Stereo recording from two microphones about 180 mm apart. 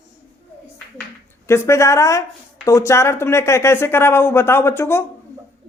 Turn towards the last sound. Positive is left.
turn(degrees=15)  # may be behind; listen again after turning